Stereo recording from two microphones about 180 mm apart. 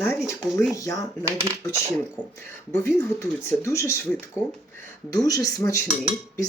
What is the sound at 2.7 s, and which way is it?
Speech, 15° left (ahead or behind).